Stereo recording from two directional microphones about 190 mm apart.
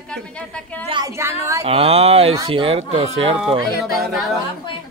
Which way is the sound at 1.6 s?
30° right (ahead or behind).